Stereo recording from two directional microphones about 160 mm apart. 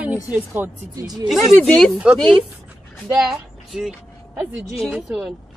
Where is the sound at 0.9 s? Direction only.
25° right (ahead or behind).